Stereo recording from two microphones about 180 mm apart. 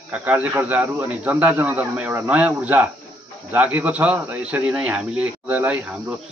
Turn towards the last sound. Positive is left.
turn(degrees=-5)  # may be behind; listen again after turning